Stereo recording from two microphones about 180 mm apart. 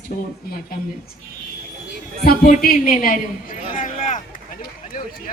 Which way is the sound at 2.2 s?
55° left (ahead or behind).